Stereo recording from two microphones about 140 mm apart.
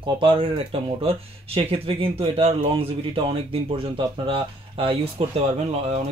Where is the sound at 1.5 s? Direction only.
45° right (ahead or behind).